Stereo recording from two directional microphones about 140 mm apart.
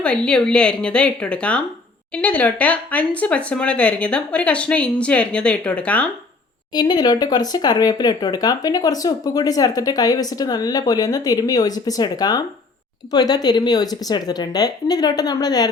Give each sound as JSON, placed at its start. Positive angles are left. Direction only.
{"t": 0.0, "sound": "speech", "side_deg": 5}
{"t": 6.7, "sound": "speech", "side_deg": 30}